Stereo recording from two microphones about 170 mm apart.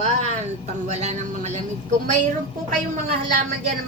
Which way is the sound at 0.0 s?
40° right (ahead or behind).